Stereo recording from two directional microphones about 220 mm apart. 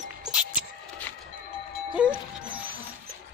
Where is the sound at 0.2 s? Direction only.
5° right (ahead or behind).